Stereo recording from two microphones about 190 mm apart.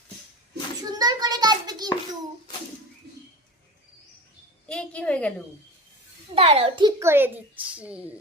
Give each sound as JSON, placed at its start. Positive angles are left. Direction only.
{"t": 0.8, "sound": "a sound", "side_deg": -20}
{"t": 4.7, "sound": "a woman's voice", "side_deg": 5}
{"t": 6.3, "sound": "a child's voice", "side_deg": -30}
{"t": 7.0, "sound": "speech", "side_deg": -15}